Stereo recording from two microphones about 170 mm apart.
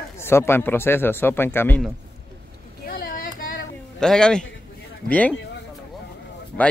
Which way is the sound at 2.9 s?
60° left (ahead or behind).